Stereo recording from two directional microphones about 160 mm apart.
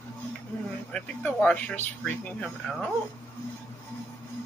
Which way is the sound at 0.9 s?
10° left (ahead or behind).